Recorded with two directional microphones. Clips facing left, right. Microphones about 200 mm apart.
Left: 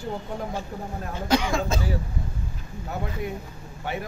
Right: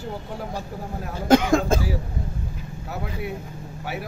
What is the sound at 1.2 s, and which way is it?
Speech, 50° right (ahead or behind).